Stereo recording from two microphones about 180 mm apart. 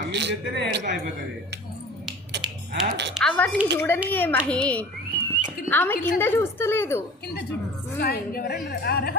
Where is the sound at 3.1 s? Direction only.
5° left (ahead or behind).